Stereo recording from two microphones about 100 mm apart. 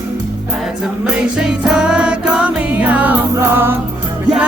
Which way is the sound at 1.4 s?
5° right (ahead or behind).